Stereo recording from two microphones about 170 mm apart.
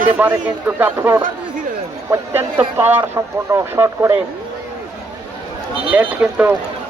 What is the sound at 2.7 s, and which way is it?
Speech, 15° right (ahead or behind).